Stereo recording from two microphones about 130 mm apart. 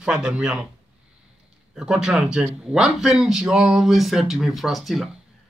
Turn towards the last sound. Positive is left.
turn(degrees=0)  # may be behind; listen again after turning